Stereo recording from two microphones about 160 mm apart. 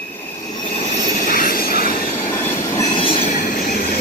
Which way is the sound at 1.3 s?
60° left (ahead or behind).